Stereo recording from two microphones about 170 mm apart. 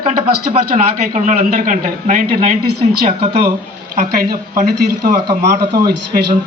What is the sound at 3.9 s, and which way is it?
Speech, 55° right (ahead or behind).